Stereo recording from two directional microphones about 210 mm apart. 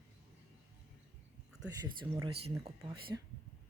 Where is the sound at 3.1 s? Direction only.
10° right (ahead or behind).